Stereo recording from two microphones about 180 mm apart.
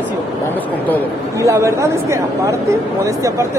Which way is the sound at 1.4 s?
15° right (ahead or behind).